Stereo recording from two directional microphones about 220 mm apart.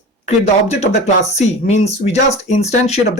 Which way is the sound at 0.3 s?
30° left (ahead or behind).